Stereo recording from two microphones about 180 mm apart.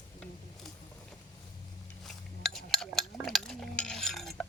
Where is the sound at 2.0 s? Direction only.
Centre (ahead or behind).